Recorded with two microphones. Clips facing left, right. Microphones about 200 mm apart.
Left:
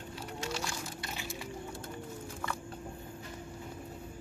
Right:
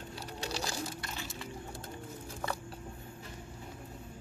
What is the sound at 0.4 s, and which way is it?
Sewing machine, 35° right (ahead or behind).